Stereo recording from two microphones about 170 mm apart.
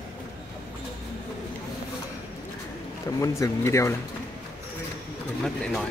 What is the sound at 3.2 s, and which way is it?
Speech, 20° left (ahead or behind).